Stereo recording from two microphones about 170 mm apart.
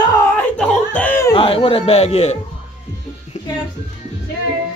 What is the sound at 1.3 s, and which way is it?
A man's voice, 30° left (ahead or behind).